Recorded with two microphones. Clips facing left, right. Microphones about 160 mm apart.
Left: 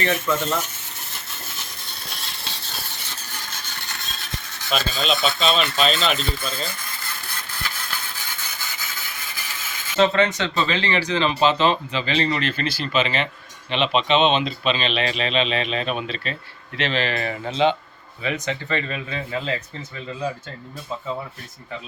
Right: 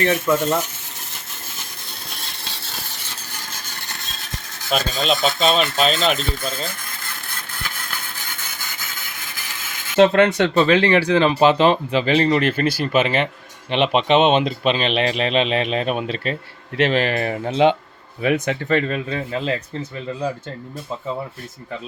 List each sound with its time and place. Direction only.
0.0 s speech: 50° right (ahead or behind)
4.7 s speech: 50° right (ahead or behind)
9.9 s speech: 55° right (ahead or behind)
12.6 s speech: 10° right (ahead or behind)
12.9 s speech: 55° right (ahead or behind)